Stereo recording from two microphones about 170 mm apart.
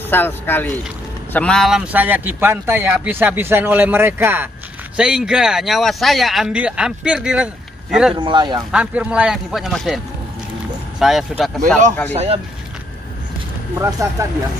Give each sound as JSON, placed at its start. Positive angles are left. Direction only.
{"t": 0.1, "sound": "speech", "side_deg": 10}
{"t": 8.1, "sound": "speech", "side_deg": -25}
{"t": 8.7, "sound": "speech", "side_deg": -5}
{"t": 12.1, "sound": "speech", "side_deg": -40}
{"t": 13.7, "sound": "speech", "side_deg": -20}